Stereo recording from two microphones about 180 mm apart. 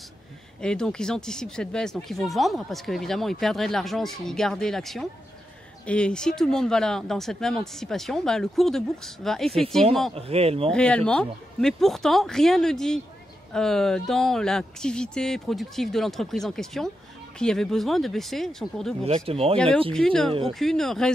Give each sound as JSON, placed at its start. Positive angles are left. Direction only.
{"t": 0.6, "sound": "speech", "side_deg": 5}
{"t": 10.1, "sound": "speech", "side_deg": -35}
{"t": 10.7, "sound": "speech", "side_deg": 5}
{"t": 19.0, "sound": "speech", "side_deg": -35}
{"t": 19.9, "sound": "speech", "side_deg": 5}